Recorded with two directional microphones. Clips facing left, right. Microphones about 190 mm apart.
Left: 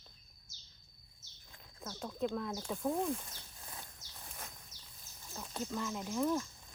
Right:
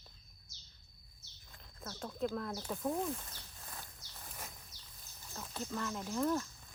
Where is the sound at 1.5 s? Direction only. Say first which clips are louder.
Left 1 dB; 15° left (ahead or behind).